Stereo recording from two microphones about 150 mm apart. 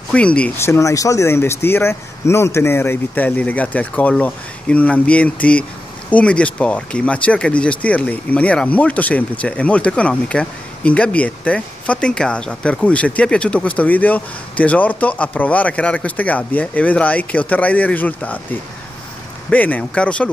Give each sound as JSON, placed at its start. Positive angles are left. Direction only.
{"t": 0.1, "sound": "speech", "side_deg": 10}